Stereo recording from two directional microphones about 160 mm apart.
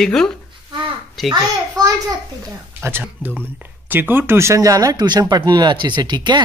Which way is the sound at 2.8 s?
15° right (ahead or behind).